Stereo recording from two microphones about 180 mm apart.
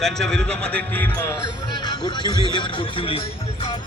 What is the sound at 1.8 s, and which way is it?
Speech, 25° left (ahead or behind).